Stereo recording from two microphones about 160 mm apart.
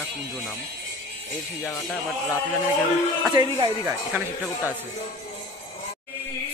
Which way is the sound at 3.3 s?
15° right (ahead or behind).